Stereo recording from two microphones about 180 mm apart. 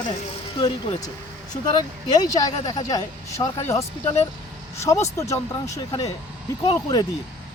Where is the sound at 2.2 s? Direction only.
20° left (ahead or behind).